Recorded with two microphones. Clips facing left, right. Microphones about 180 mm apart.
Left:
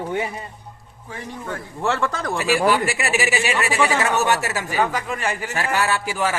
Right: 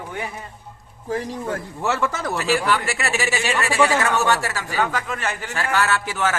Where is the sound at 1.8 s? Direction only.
5° right (ahead or behind).